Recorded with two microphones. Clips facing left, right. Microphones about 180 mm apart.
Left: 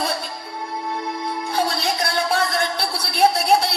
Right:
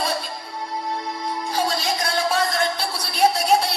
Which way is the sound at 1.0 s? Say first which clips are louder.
Left 1 dB; 60° left (ahead or behind).